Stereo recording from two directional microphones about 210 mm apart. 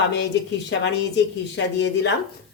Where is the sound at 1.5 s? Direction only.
55° left (ahead or behind).